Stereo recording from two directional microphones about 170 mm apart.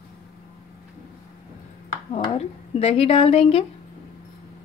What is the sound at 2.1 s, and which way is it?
Speech, 35° left (ahead or behind).